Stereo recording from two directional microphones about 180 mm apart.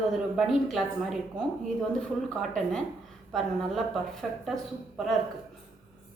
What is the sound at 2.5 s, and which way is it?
A woman's voice, 5° left (ahead or behind).